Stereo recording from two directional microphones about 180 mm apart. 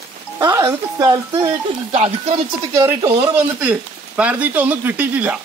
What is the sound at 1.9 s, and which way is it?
Speech, 35° right (ahead or behind).